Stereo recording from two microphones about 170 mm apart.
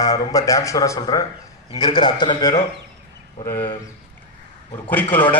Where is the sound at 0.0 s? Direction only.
20° left (ahead or behind).